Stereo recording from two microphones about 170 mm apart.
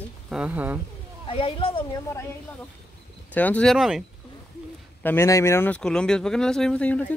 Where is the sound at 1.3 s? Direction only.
30° left (ahead or behind).